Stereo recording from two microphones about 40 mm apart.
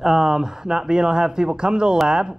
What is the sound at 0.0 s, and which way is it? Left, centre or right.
A man's voice, centre.